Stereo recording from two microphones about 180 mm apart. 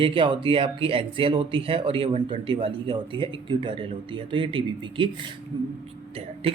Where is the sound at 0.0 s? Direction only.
25° right (ahead or behind).